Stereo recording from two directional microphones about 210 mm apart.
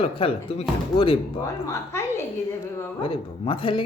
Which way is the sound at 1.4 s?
15° left (ahead or behind).